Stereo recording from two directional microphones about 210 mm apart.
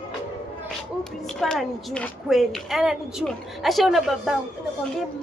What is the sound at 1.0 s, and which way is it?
A woman's voice, 5° left (ahead or behind).